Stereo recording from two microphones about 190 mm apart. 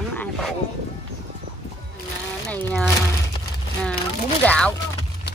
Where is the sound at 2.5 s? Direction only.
5° left (ahead or behind).